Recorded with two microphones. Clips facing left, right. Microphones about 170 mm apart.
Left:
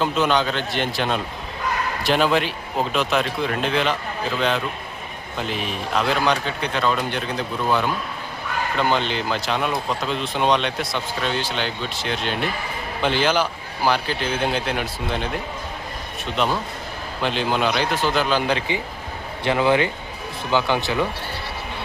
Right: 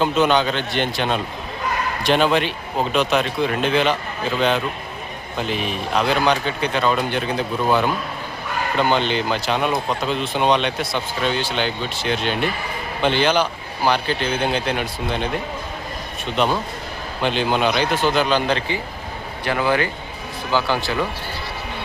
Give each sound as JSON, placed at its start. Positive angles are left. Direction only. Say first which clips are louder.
{"t": 0.0, "sound": "speech", "louder": "right 3 dB", "side_deg": 0}
{"t": 17.2, "sound": "speech", "louder": "right 2 dB", "side_deg": 0}
{"t": 19.5, "sound": "speech", "louder": "left 2 dB", "side_deg": 25}